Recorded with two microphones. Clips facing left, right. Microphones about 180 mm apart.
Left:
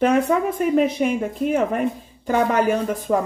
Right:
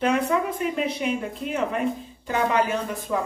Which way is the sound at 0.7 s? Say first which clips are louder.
Left 7 dB; 45° left (ahead or behind).